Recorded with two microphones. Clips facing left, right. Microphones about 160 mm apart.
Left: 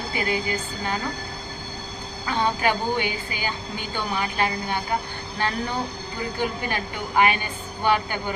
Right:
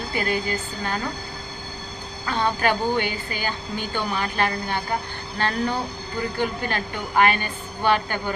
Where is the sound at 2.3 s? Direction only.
15° left (ahead or behind).